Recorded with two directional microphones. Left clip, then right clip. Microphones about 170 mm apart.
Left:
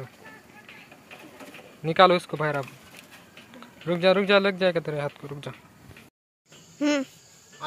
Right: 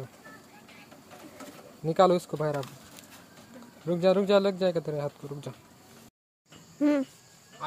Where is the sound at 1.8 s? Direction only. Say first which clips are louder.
Left 4 dB; 5° right (ahead or behind).